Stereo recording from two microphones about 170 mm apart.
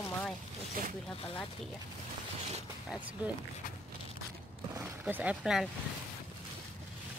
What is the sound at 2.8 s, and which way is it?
Speech, 5° right (ahead or behind).